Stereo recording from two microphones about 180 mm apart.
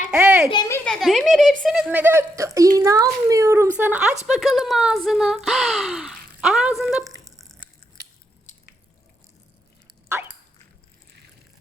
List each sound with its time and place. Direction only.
0.1 s a child's voice: 10° right (ahead or behind)
0.5 s a child's voice: 20° left (ahead or behind)
0.9 s speech: centre (ahead or behind)
7.3 s a sound: centre (ahead or behind)